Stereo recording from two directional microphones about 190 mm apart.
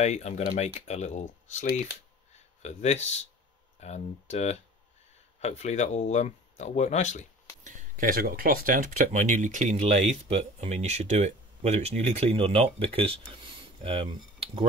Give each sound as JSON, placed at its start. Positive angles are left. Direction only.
{"t": 0.0, "sound": "speech", "side_deg": 35}
{"t": 7.6, "sound": "speech", "side_deg": -45}